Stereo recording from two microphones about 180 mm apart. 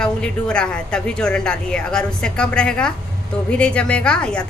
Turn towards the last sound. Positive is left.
turn(degrees=5)  # may be behind; listen again after turning